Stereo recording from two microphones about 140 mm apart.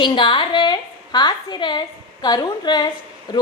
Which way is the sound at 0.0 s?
35° left (ahead or behind).